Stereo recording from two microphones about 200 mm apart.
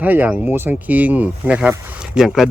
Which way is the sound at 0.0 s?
10° right (ahead or behind).